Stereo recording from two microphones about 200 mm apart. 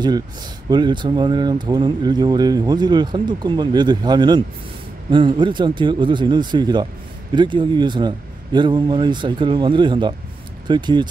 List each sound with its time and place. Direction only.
0.7 s speech: 20° right (ahead or behind)